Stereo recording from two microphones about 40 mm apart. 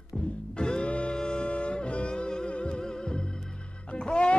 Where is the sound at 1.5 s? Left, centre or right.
Left.